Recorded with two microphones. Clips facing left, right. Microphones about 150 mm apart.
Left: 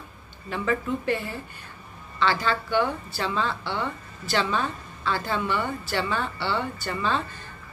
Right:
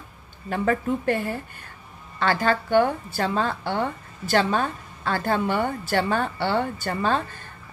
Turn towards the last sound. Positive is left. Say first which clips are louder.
# right 3 dB
turn(degrees=-45)  # may be behind; listen again after turning